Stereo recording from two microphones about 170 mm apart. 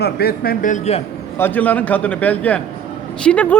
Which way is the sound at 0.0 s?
65° left (ahead or behind).